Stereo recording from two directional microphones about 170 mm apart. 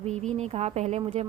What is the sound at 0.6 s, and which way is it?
Speech, 40° right (ahead or behind).